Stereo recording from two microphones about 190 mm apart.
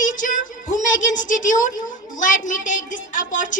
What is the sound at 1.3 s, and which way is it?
A woman's voice, 45° left (ahead or behind).